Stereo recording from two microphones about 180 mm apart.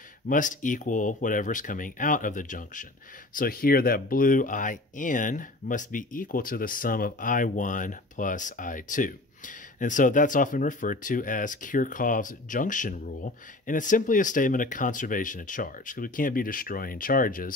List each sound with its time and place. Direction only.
0.3 s speech: 45° left (ahead or behind)